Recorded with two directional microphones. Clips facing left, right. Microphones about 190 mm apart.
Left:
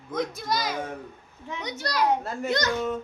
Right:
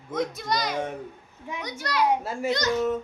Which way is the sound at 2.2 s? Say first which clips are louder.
Right 2 dB; 10° right (ahead or behind).